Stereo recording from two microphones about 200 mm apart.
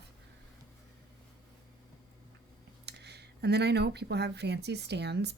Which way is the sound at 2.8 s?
55° right (ahead or behind).